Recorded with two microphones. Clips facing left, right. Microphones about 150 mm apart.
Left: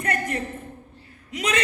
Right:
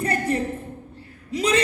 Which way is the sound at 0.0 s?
30° right (ahead or behind).